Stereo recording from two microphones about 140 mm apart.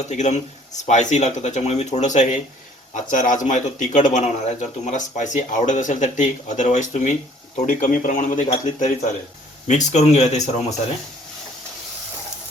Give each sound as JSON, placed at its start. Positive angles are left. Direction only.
{"t": 0.0, "sound": "speech", "side_deg": 55}
{"t": 7.7, "sound": "speech", "side_deg": 75}
{"t": 8.4, "sound": "speech", "side_deg": 50}